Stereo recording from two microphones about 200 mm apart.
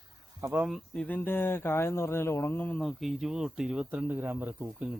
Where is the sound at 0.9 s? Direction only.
10° left (ahead or behind); by 4.9 s 10° right (ahead or behind).